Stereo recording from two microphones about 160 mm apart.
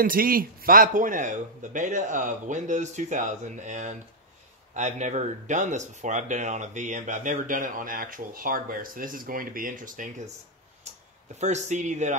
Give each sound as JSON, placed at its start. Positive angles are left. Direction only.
{"t": 0.0, "sound": "a man's voice", "side_deg": -65}
{"t": 11.3, "sound": "a man's voice", "side_deg": -45}